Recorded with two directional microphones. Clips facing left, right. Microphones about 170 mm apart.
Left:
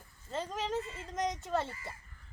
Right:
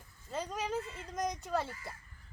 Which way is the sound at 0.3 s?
Centre (ahead or behind).